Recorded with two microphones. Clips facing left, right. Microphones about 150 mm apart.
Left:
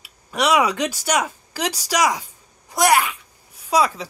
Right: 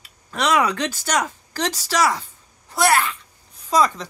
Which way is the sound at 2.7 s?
15° left (ahead or behind).